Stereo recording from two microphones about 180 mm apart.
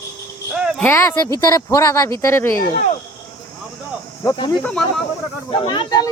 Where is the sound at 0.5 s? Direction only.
5° right (ahead or behind).